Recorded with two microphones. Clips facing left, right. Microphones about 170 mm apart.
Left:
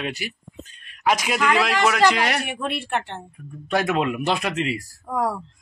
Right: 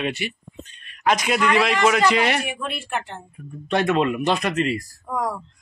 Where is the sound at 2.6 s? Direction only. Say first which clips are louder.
Left 3 dB; 65° left (ahead or behind).